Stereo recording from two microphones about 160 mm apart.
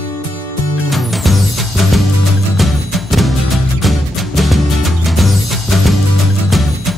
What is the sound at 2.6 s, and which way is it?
Music, centre (ahead or behind).